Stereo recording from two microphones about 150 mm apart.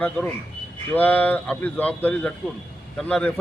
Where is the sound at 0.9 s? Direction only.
10° left (ahead or behind).